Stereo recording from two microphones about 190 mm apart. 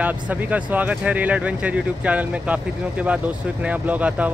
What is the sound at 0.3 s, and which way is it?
Speech, 10° right (ahead or behind).